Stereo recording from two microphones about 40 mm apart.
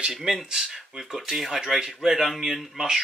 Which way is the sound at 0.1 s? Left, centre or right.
Centre.